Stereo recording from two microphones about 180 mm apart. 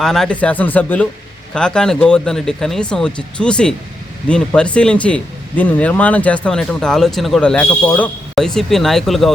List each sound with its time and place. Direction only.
0.0 s speech: centre (ahead or behind)